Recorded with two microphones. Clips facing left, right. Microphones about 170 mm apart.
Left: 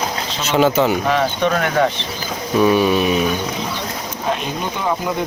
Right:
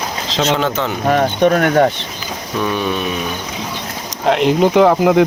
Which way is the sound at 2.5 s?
5° left (ahead or behind).